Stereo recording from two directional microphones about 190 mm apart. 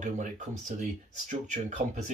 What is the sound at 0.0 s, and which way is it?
Speech, 40° right (ahead or behind).